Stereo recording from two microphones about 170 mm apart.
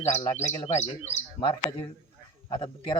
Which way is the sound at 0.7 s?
40° left (ahead or behind).